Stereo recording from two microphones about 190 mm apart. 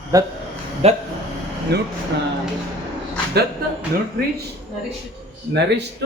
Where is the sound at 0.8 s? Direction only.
30° right (ahead or behind).